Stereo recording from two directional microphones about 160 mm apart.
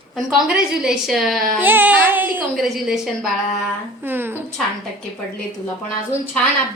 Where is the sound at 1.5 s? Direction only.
10° right (ahead or behind).